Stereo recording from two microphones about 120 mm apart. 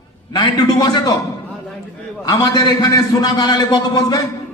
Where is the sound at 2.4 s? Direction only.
35° left (ahead or behind).